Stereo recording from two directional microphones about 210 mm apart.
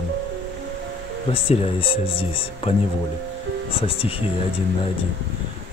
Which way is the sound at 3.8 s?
25° left (ahead or behind).